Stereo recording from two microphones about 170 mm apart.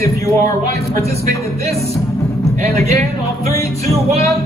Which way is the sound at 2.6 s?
40° right (ahead or behind).